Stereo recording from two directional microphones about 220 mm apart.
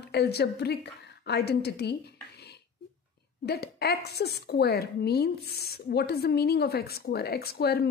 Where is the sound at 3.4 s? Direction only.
45° left (ahead or behind).